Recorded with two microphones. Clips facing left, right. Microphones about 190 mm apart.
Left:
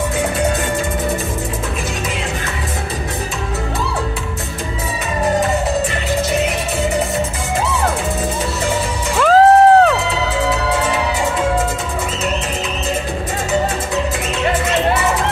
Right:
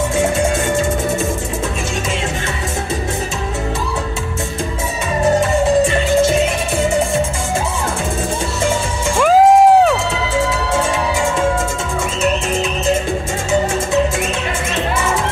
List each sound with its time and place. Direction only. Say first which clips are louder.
9.2 s music: even; 10° right (ahead or behind)